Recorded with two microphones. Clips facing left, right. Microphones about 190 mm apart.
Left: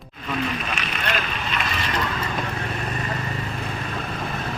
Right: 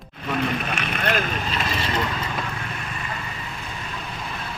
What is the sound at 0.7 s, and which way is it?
Speech, 55° right (ahead or behind).